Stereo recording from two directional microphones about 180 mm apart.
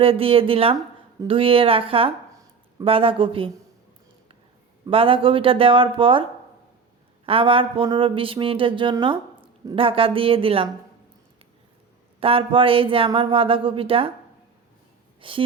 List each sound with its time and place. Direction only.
0.0 s a woman's voice: 30° right (ahead or behind)
4.9 s speech: 30° right (ahead or behind)
7.3 s speech: 30° right (ahead or behind)
12.2 s speech: 30° right (ahead or behind)
15.2 s speech: 30° right (ahead or behind)